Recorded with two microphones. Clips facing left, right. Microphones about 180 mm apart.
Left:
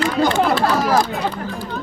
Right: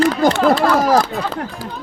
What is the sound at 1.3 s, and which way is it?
Speech, 90° right.